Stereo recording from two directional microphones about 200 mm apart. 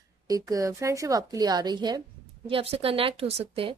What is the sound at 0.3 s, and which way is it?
A woman's voice, 15° right (ahead or behind).